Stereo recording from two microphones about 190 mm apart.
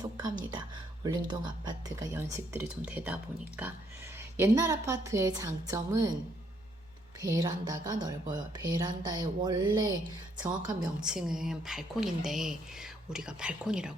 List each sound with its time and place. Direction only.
0.0 s a woman's voice: 20° right (ahead or behind)
7.2 s speech: 20° right (ahead or behind)
11.0 s speech: 5° right (ahead or behind)